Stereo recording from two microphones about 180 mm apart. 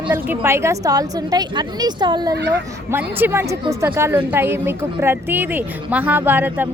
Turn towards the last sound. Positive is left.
turn(degrees=-10)  # may be behind; listen again after turning